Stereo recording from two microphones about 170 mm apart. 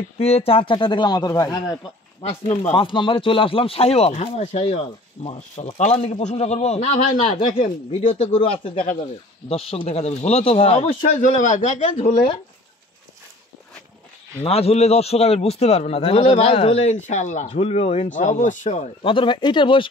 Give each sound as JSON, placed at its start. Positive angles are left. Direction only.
{"t": 0.2, "sound": "speech", "side_deg": 35}
{"t": 2.4, "sound": "a man's voice", "side_deg": 35}
{"t": 14.4, "sound": "a man's voice", "side_deg": 35}
{"t": 19.0, "sound": "speech", "side_deg": 30}